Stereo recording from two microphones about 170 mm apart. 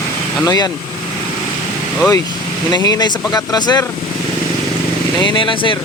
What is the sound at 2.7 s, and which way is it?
Speech, 25° left (ahead or behind).